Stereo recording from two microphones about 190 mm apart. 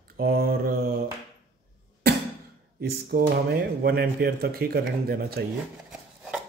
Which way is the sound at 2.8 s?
55° right (ahead or behind).